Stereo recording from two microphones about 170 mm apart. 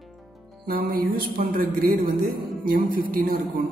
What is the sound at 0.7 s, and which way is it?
Music, 60° right (ahead or behind).